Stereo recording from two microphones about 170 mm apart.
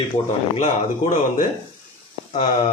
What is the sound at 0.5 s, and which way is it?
Speech, 50° left (ahead or behind).